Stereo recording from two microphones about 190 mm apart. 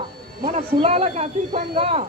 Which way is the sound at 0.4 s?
40° right (ahead or behind).